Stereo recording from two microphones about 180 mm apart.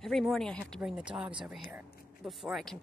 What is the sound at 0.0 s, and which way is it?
Speech, centre (ahead or behind).